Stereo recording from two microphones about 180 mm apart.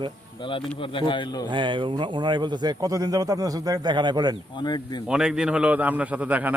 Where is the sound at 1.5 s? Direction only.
25° right (ahead or behind).